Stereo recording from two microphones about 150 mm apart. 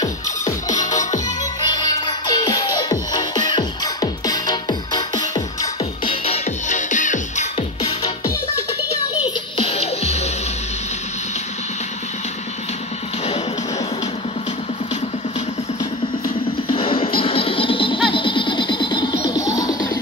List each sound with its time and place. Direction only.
0.7 s music: 55° left (ahead or behind)
1.7 s music: 25° left (ahead or behind)
6.0 s music: 40° left (ahead or behind)
6.7 s music: 55° left (ahead or behind)
9.6 s music: 45° left (ahead or behind)
16.6 s music: 35° left (ahead or behind)